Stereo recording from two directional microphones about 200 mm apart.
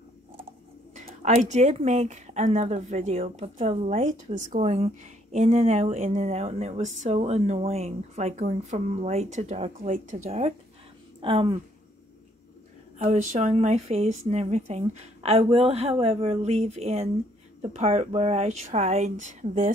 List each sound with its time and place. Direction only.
0.9 s speech: 35° right (ahead or behind)
11.1 s speech: 25° right (ahead or behind)
13.0 s speech: 35° right (ahead or behind)